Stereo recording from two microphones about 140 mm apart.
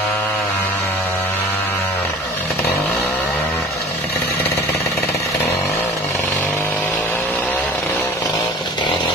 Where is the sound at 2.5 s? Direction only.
10° left (ahead or behind).